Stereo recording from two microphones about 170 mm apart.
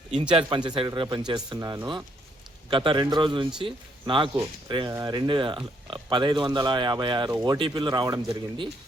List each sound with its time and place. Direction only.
0.1 s speech: 30° right (ahead or behind)